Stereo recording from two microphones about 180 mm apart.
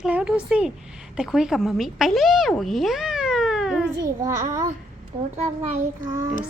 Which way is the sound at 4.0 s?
20° right (ahead or behind).